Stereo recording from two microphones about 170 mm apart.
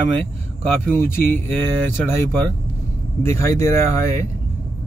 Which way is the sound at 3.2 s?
15° left (ahead or behind).